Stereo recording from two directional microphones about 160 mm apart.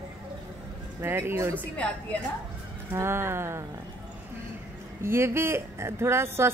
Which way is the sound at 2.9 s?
15° right (ahead or behind).